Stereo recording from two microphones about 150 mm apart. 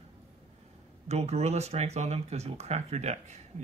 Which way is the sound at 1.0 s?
45° right (ahead or behind).